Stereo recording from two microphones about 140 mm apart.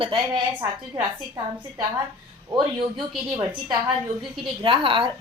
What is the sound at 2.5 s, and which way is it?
Speech, 35° right (ahead or behind).